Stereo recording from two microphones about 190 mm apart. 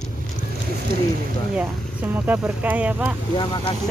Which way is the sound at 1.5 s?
5° right (ahead or behind).